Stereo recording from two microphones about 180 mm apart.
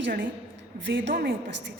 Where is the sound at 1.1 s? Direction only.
55° right (ahead or behind).